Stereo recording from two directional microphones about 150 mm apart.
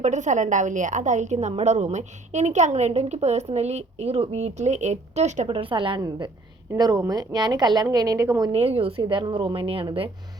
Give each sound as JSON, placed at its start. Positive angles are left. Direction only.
{"t": 0.0, "sound": "a woman's voice", "side_deg": -55}
{"t": 5.5, "sound": "a woman's voice", "side_deg": -35}
{"t": 8.5, "sound": "a woman's voice", "side_deg": -40}